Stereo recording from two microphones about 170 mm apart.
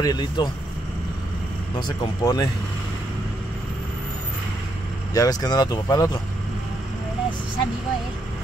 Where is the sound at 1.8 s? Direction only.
20° left (ahead or behind).